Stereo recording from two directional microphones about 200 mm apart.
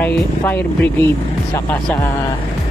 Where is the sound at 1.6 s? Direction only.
10° left (ahead or behind).